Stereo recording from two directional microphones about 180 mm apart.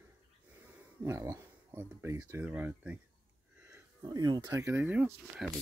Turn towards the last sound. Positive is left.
turn(degrees=-5)  # may be behind; listen again after turning